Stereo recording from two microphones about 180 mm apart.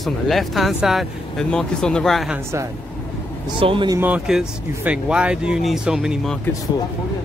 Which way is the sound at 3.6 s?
30° right (ahead or behind).